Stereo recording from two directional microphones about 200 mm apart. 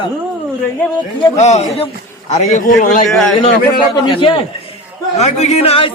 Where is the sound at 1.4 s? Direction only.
35° left (ahead or behind).